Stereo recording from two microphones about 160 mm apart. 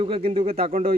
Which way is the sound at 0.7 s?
65° right (ahead or behind).